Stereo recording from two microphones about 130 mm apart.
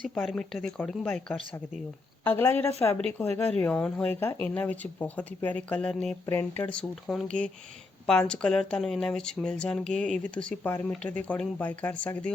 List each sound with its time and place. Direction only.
0.3 s speech: 5° left (ahead or behind)
6.2 s speech: 15° left (ahead or behind)